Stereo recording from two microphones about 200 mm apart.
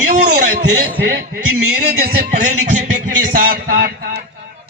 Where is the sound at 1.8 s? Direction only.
50° right (ahead or behind).